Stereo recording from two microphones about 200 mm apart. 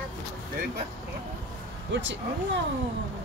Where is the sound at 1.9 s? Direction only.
65° right (ahead or behind).